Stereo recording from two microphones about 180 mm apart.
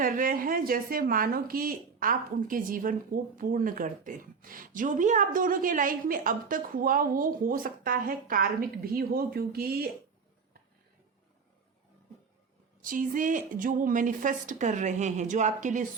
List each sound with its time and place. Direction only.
0.0 s a woman's voice: 50° right (ahead or behind)
12.8 s a woman's voice: 45° right (ahead or behind)